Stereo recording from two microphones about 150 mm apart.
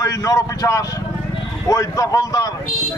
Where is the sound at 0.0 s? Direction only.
20° left (ahead or behind).